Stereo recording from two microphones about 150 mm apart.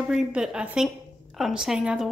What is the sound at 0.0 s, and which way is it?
Speech, 5° right (ahead or behind).